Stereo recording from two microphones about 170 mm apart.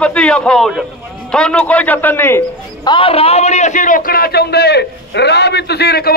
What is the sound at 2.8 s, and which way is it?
A man's voice, 30° left (ahead or behind).